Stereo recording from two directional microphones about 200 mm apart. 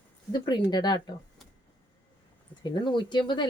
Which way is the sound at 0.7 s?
20° left (ahead or behind).